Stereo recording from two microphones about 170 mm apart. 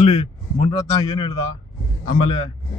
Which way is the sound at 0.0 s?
40° left (ahead or behind).